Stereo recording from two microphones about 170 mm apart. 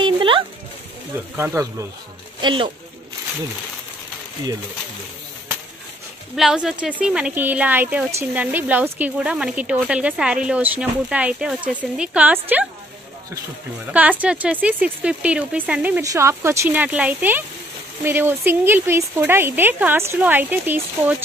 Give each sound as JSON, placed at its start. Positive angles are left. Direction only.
{"t": 0.0, "sound": "music", "side_deg": -30}
{"t": 1.3, "sound": "speech", "side_deg": -15}
{"t": 2.4, "sound": "speech", "side_deg": -30}
{"t": 6.3, "sound": "speech", "side_deg": -5}
{"t": 13.9, "sound": "speech", "side_deg": -10}